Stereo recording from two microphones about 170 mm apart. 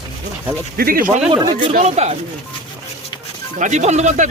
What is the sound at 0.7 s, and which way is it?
Speech, 60° right (ahead or behind).